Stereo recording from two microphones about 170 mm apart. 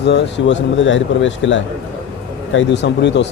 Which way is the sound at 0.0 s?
85° left.